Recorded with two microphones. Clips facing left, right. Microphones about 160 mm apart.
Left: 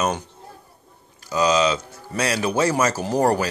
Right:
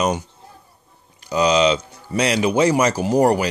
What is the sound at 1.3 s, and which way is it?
A man's voice, 20° right (ahead or behind).